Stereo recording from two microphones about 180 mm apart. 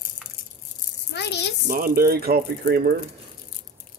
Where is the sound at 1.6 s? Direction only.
55° right (ahead or behind).